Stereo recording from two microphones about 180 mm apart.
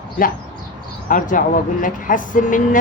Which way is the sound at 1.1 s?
45° left (ahead or behind).